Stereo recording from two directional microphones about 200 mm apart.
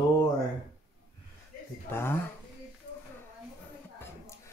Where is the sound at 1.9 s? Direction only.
10° left (ahead or behind).